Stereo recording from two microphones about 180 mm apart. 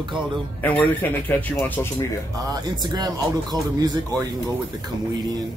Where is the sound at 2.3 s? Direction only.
25° right (ahead or behind).